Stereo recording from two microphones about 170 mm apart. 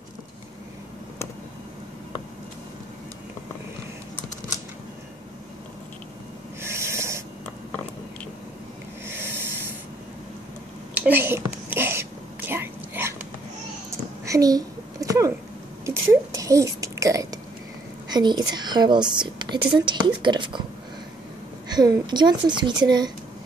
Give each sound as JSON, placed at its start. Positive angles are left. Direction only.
{"t": 6.6, "sound": "snort", "side_deg": -15}
{"t": 9.0, "sound": "a sound", "side_deg": -15}
{"t": 11.0, "sound": "whispering", "side_deg": -10}
{"t": 13.8, "sound": "a sound", "side_deg": -20}
{"t": 18.5, "sound": "speech", "side_deg": -25}
{"t": 21.6, "sound": "speech", "side_deg": -25}